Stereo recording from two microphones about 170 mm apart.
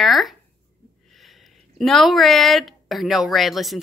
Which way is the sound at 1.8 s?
Centre (ahead or behind).